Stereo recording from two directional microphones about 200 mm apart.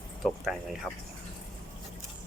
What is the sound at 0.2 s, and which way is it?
Speech, centre (ahead or behind).